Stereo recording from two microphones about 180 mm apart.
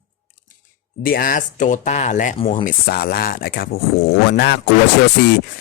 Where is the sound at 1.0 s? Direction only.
55° left (ahead or behind).